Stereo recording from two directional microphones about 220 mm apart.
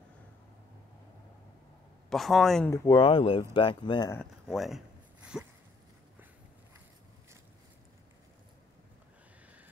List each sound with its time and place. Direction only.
2.0 s a man's voice: centre (ahead or behind)
2.7 s speech: 15° left (ahead or behind)
4.2 s a sound: centre (ahead or behind)